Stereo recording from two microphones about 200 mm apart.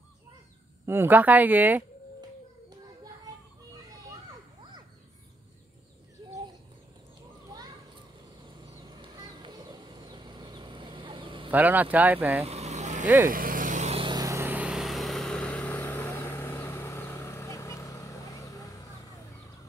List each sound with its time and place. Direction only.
0.8 s a woman's voice: 10° right (ahead or behind)
8.9 s a sound: 20° right (ahead or behind)
11.5 s a woman's voice: 10° right (ahead or behind)
12.4 s vehicle: 35° right (ahead or behind); by 18.1 s 15° left (ahead or behind)